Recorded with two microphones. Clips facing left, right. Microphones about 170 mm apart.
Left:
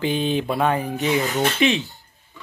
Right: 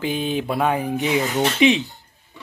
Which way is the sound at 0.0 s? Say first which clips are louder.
Left 1 dB; 5° right (ahead or behind).